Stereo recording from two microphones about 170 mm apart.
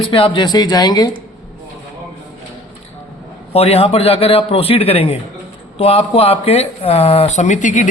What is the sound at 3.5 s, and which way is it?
A man's voice, 35° left (ahead or behind).